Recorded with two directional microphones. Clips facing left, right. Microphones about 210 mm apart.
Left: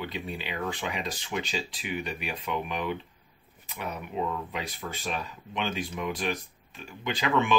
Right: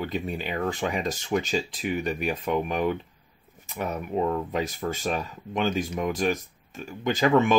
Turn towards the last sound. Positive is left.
turn(degrees=-45)  # may be behind; listen again after turning